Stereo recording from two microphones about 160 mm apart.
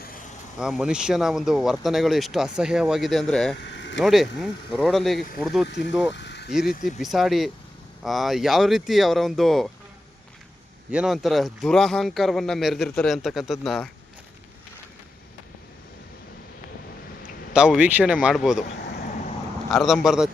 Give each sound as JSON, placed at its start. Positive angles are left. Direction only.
{"t": 0.0, "sound": "vehicle", "side_deg": 60}
{"t": 0.6, "sound": "speech", "side_deg": -5}
{"t": 5.6, "sound": "speech", "side_deg": 90}
{"t": 6.1, "sound": "vehicle", "side_deg": 90}
{"t": 6.5, "sound": "speech", "side_deg": -5}
{"t": 10.9, "sound": "speech", "side_deg": 0}
{"t": 17.5, "sound": "speech", "side_deg": -5}
{"t": 18.7, "sound": "a sound", "side_deg": 90}
{"t": 19.7, "sound": "speech", "side_deg": 0}